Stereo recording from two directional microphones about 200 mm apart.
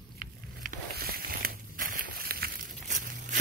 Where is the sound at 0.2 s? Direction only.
50° right (ahead or behind).